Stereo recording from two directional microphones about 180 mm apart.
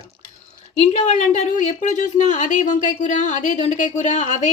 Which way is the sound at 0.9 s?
40° left (ahead or behind).